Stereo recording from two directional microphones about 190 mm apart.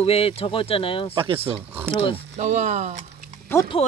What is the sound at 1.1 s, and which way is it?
Speech, 30° right (ahead or behind).